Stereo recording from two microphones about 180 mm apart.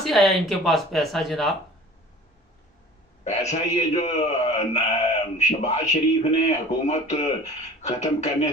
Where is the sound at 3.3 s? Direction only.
40° left (ahead or behind).